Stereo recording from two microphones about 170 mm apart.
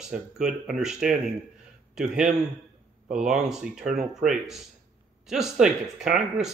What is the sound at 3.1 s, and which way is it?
Speech, 5° right (ahead or behind).